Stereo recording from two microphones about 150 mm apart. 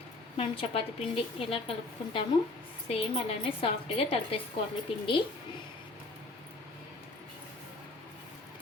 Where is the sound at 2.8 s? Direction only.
40° left (ahead or behind).